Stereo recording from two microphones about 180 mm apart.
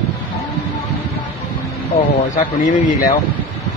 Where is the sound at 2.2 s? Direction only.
50° left (ahead or behind).